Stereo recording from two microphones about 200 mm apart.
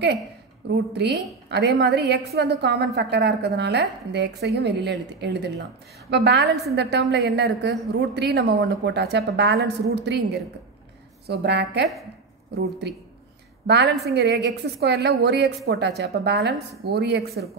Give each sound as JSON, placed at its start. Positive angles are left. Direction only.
{"t": 0.7, "sound": "a woman's voice", "side_deg": -55}
{"t": 13.7, "sound": "a woman's voice", "side_deg": -60}